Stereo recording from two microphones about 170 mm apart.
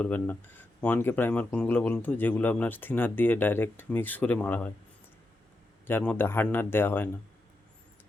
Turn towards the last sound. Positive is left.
turn(degrees=10)  # may be behind; listen again after turning